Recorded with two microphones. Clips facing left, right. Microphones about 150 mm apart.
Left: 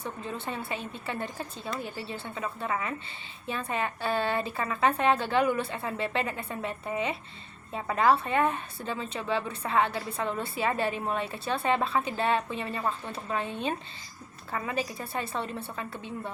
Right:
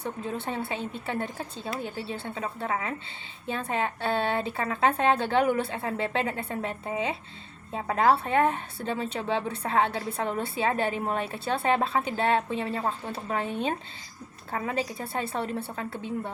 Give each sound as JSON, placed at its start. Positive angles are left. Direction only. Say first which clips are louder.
{"t": 0.0, "sound": "a woman's voice", "louder": "right 3 dB", "side_deg": -30}
{"t": 14.9, "sound": "a woman's voice", "louder": "right 2 dB", "side_deg": -25}